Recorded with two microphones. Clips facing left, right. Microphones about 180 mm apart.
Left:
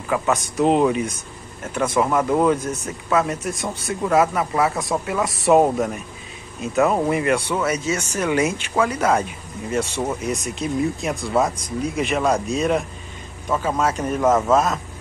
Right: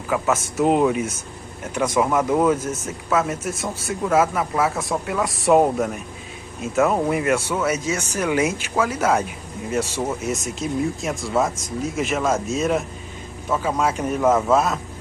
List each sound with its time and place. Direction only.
0.1 s a man's voice: 5° right (ahead or behind)